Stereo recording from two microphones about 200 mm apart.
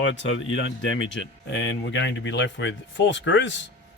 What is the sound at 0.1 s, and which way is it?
Speech, 70° left (ahead or behind).